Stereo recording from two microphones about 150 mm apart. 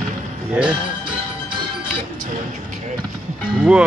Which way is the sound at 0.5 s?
5° right (ahead or behind).